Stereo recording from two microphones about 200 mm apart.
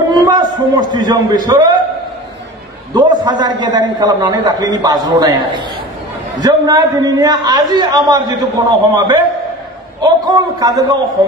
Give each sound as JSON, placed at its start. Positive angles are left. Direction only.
{"t": 0.1, "sound": "a man's voice", "side_deg": -20}
{"t": 2.9, "sound": "a man's voice", "side_deg": -20}